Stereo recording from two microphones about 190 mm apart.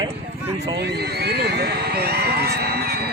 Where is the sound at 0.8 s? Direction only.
60° right (ahead or behind).